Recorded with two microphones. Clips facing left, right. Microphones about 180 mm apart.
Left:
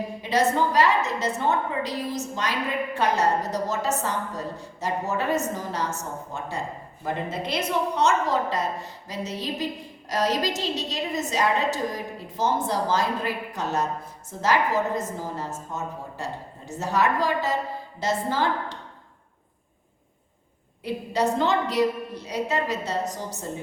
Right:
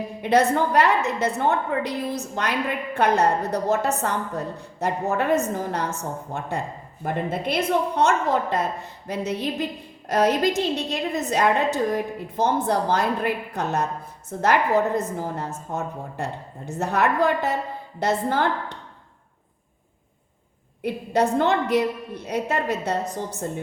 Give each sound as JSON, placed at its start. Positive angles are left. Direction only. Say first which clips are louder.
{"t": 0.2, "sound": "a woman's voice", "louder": "right 3 dB", "side_deg": -60}
{"t": 20.8, "sound": "a woman's voice", "louder": "right 3 dB", "side_deg": -55}